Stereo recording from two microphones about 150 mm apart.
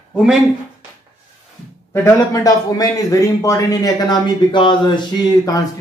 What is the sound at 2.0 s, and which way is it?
Speech, 25° left (ahead or behind).